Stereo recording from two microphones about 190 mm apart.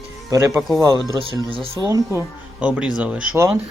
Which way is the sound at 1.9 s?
15° right (ahead or behind).